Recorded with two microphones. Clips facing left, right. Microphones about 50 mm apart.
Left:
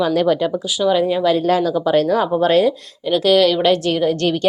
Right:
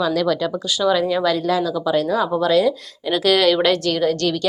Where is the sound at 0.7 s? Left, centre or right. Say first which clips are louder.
Even; centre.